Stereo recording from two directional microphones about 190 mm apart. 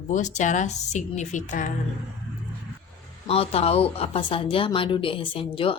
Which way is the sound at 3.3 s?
30° left (ahead or behind).